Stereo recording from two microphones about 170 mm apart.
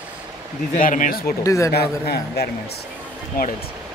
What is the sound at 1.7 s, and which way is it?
Speech, 70° left (ahead or behind).